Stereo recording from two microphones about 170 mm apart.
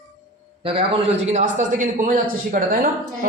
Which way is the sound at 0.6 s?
35° right (ahead or behind).